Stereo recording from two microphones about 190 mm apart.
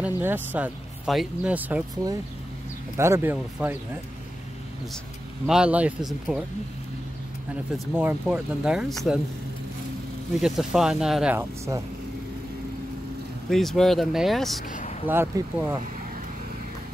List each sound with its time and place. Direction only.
0.2 s speech: 10° right (ahead or behind)
5.5 s speech: 5° right (ahead or behind)
7.7 s speech: centre (ahead or behind)
10.4 s speech: centre (ahead or behind)
11.3 s speech: 15° right (ahead or behind)
13.5 s speech: centre (ahead or behind)
14.7 s a sound: 40° left (ahead or behind)
15.0 s speech: 15° right (ahead or behind)